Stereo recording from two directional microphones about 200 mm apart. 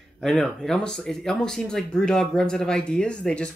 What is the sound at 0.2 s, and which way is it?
Speech, 5° left (ahead or behind).